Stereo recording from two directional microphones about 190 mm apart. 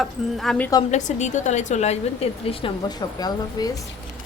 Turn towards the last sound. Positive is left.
turn(degrees=20)  # may be behind; listen again after turning